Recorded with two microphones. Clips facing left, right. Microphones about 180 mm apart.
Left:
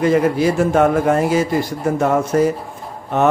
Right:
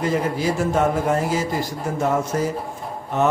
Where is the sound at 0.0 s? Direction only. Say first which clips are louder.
Left 7 dB; 65° left (ahead or behind).